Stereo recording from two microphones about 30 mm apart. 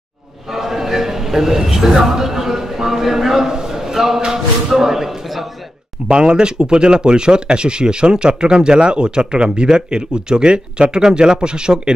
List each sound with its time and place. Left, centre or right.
0.6 s a man's voice: centre
6.0 s speech: right